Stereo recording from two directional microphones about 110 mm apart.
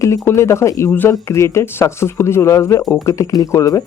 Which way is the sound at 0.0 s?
25° left (ahead or behind).